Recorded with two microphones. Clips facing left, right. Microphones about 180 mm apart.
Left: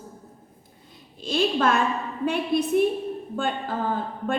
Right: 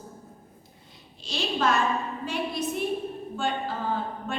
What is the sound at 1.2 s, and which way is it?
A woman's voice, 55° left (ahead or behind).